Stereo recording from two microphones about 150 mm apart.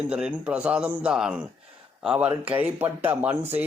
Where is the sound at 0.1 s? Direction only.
5° right (ahead or behind).